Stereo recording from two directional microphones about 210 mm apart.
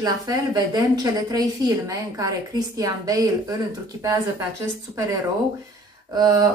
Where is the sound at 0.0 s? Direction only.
15° right (ahead or behind).